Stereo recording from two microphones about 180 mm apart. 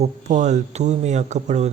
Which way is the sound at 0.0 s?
40° right (ahead or behind).